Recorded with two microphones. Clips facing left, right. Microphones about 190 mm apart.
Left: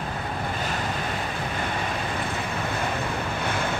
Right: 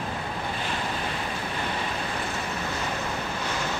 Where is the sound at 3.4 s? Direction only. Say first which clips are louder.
Left 4 dB; 55° left (ahead or behind).